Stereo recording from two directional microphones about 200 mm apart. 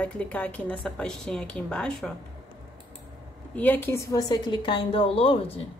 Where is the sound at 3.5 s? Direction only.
10° left (ahead or behind); by 5.4 s 30° left (ahead or behind).